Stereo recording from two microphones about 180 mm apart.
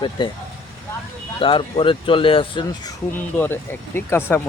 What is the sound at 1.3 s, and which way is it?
Speech, 30° left (ahead or behind).